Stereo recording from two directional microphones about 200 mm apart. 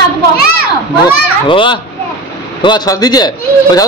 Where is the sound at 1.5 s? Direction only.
25° left (ahead or behind).